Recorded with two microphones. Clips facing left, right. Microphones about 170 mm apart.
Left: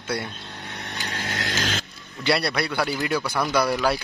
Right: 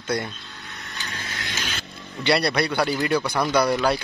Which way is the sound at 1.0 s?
90° left.